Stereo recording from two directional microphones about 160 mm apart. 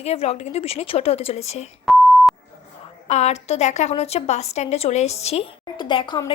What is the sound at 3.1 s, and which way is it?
A woman's voice, 45° left (ahead or behind).